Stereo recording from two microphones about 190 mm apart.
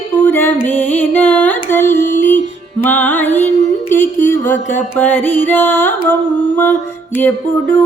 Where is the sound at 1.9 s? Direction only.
45° left (ahead or behind).